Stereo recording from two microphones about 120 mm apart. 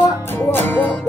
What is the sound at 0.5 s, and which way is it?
Music, 15° left (ahead or behind).